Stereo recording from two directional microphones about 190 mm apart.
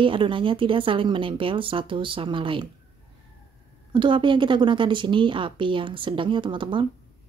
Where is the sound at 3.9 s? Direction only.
25° right (ahead or behind).